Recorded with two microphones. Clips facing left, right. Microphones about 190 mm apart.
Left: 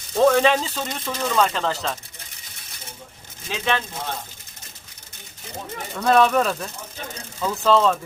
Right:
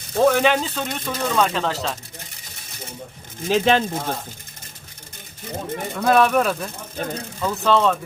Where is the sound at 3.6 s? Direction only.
45° right (ahead or behind).